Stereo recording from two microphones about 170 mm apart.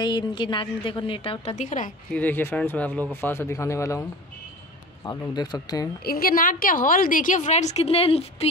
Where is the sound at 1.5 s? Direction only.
50° left (ahead or behind).